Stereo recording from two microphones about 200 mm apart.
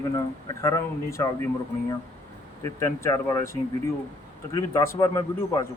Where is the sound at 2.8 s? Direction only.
15° left (ahead or behind).